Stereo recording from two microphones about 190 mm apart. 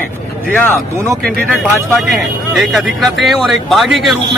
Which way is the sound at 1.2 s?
Centre (ahead or behind).